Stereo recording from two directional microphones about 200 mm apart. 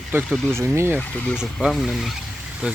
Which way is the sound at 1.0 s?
5° left (ahead or behind).